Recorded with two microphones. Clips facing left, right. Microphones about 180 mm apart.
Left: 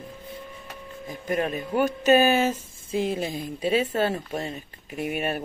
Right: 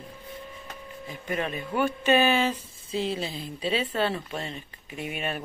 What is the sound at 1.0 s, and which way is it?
Speech, 40° left (ahead or behind).